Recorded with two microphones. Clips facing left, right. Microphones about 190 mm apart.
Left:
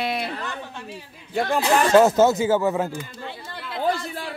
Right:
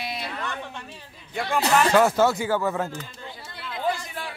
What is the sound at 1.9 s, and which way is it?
Speech, 20° left (ahead or behind).